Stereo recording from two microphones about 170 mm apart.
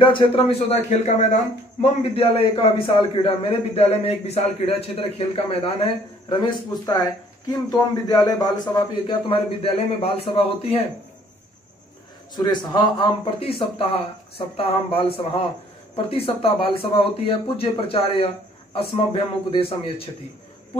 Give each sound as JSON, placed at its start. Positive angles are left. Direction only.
{"t": 0.4, "sound": "a man's voice", "side_deg": 35}
{"t": 12.4, "sound": "a man's voice", "side_deg": 25}